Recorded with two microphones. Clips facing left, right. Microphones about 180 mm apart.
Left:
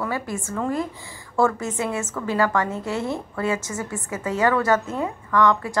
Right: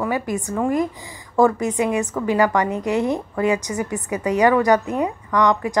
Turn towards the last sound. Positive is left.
turn(degrees=-15)  # may be behind; listen again after turning